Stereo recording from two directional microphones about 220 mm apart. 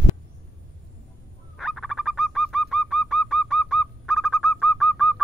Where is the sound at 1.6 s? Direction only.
Centre (ahead or behind).